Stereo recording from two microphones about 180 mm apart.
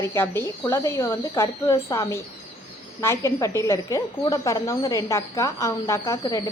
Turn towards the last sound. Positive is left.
turn(degrees=20)  # may be behind; listen again after turning